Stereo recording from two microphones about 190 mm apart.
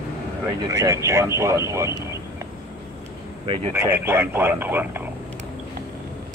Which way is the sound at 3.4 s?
30° right (ahead or behind).